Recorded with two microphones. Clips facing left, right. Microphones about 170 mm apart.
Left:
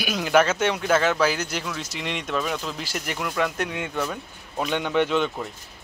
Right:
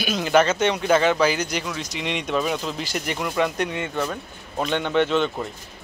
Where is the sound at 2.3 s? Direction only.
10° right (ahead or behind).